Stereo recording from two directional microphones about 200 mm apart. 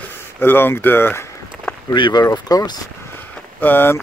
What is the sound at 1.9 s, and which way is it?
Speech, 20° left (ahead or behind).